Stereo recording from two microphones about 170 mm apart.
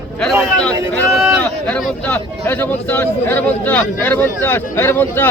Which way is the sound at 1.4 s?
5° left (ahead or behind).